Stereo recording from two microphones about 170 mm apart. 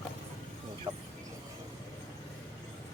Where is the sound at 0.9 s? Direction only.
20° right (ahead or behind).